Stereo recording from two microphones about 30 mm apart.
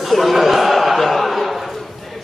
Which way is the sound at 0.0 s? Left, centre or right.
Centre.